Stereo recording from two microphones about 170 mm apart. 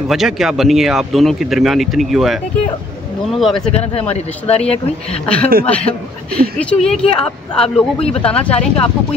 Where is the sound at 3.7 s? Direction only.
35° left (ahead or behind).